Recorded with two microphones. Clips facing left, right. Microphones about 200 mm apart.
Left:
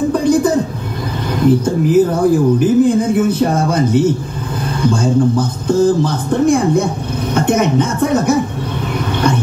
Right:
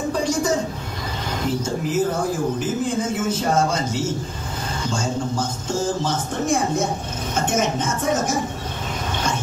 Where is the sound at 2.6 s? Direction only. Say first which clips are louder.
Left 12 dB; 60° left (ahead or behind).